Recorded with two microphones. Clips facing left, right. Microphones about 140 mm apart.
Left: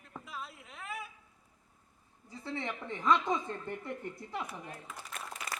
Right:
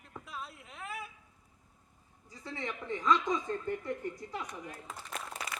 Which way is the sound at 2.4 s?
25° left (ahead or behind).